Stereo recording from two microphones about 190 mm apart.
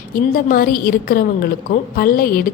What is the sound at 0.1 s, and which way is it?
A woman's voice, 45° left (ahead or behind).